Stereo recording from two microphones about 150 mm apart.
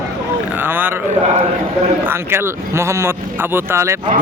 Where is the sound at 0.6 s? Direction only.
15° right (ahead or behind).